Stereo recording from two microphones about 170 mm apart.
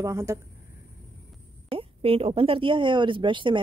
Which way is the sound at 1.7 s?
30° right (ahead or behind).